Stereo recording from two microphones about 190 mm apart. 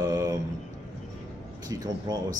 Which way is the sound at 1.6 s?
20° right (ahead or behind).